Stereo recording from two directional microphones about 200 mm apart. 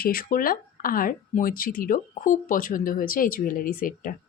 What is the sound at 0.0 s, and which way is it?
A woman's voice, 45° left (ahead or behind).